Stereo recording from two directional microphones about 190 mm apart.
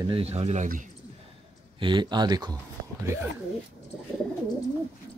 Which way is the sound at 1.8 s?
25° right (ahead or behind).